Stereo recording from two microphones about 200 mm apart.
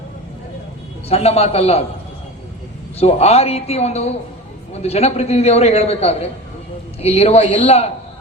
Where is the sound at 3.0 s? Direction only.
30° left (ahead or behind).